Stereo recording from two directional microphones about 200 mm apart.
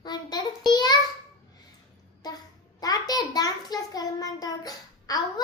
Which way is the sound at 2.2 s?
20° left (ahead or behind).